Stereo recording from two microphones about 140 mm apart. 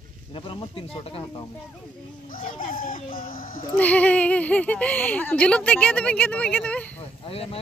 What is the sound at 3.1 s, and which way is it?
Speech, 85° left.